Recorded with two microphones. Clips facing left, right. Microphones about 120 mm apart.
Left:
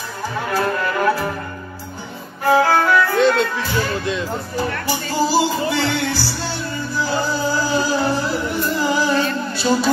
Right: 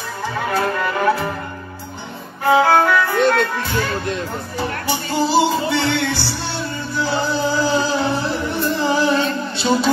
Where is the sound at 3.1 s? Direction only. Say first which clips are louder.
Even; 60° right (ahead or behind).